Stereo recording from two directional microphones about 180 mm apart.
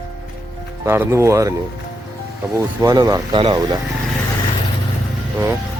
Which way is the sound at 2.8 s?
20° right (ahead or behind).